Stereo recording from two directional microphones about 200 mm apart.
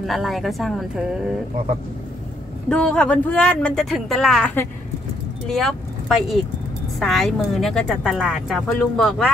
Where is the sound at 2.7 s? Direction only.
5° left (ahead or behind).